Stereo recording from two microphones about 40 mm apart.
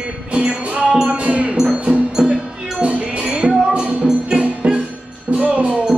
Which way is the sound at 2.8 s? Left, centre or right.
Right.